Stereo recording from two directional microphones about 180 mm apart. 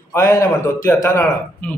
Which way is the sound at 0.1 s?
15° left (ahead or behind).